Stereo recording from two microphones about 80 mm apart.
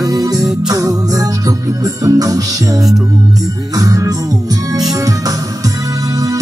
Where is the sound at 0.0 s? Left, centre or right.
Right.